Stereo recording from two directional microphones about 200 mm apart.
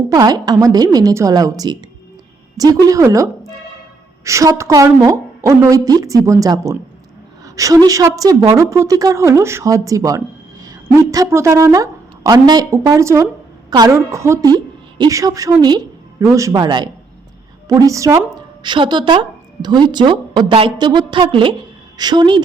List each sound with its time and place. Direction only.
0.1 s a woman's voice: 20° right (ahead or behind)